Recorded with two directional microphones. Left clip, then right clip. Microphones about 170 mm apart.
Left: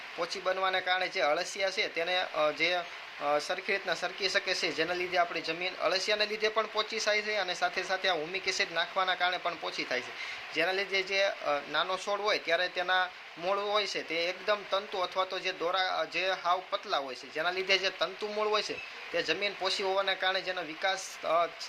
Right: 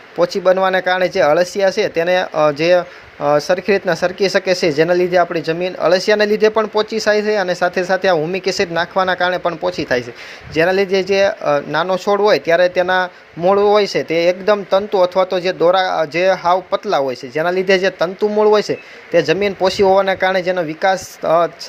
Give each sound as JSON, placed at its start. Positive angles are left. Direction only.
{"t": 0.2, "sound": "speech", "side_deg": -50}
{"t": 19.1, "sound": "speech", "side_deg": -50}